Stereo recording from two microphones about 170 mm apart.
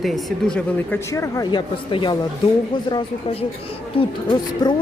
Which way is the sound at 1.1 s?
20° left (ahead or behind).